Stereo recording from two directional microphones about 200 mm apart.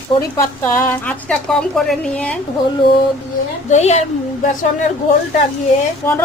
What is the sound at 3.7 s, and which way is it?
Speech, 35° left (ahead or behind).